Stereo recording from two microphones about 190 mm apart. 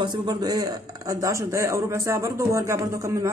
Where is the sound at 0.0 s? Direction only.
20° right (ahead or behind).